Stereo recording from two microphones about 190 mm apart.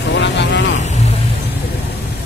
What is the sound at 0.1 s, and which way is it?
Vehicle, 70° left (ahead or behind).